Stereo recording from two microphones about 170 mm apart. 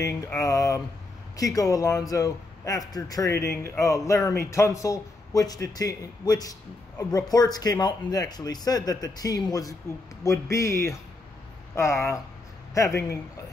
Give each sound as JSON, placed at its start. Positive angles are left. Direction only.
{"t": 0.0, "sound": "a man's voice", "side_deg": 20}